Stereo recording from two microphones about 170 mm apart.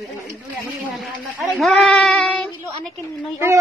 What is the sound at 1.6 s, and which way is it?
Speech, centre (ahead or behind).